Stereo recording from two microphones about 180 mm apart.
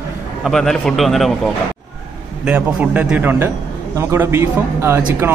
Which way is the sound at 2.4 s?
10° right (ahead or behind).